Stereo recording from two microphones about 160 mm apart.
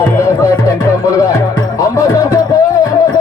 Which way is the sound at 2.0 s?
20° left (ahead or behind).